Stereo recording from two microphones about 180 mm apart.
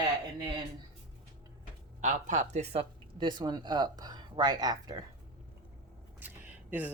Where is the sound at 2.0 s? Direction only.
45° right (ahead or behind).